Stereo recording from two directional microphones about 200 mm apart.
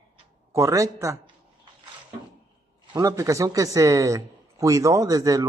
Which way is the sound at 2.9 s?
15° right (ahead or behind).